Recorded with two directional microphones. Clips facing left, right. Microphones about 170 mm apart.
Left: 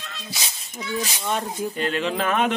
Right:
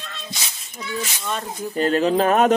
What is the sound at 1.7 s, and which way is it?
Speech, 40° right (ahead or behind).